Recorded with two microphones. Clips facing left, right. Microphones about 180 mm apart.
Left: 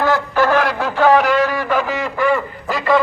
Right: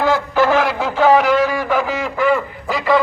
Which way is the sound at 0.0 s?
15° right (ahead or behind).